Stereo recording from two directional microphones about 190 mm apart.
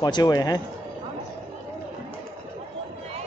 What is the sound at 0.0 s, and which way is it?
Speech, 20° left (ahead or behind).